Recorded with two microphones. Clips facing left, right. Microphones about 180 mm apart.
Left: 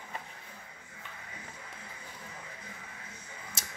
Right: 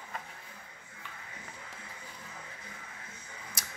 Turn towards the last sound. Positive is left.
turn(degrees=25)  # may be behind; listen again after turning